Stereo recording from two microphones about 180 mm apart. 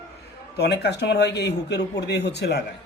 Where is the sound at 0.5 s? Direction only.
65° left (ahead or behind).